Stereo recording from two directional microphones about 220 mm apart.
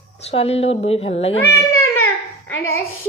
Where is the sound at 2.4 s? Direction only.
10° left (ahead or behind).